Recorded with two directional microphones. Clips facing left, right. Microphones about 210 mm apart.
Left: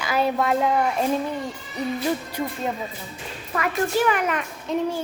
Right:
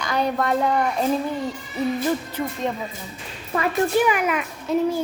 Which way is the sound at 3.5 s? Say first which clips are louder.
Right 3 dB; 25° right (ahead or behind).